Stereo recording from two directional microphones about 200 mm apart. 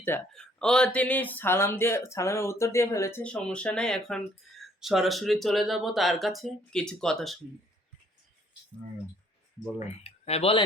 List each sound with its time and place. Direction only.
0.0 s speech: 5° left (ahead or behind)
4.5 s a sound: centre (ahead or behind)
4.8 s speech: centre (ahead or behind)
9.8 s speech: 30° left (ahead or behind)